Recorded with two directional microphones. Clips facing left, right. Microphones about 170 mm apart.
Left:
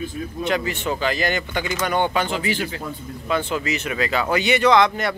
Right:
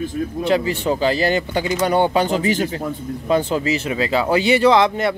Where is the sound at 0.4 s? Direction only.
30° right (ahead or behind).